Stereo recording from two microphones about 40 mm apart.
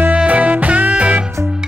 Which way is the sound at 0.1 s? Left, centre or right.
Right.